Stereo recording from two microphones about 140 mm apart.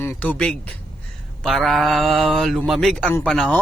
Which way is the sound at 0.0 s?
15° left (ahead or behind).